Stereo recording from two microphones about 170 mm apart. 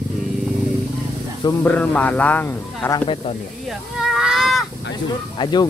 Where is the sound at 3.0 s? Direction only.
30° left (ahead or behind).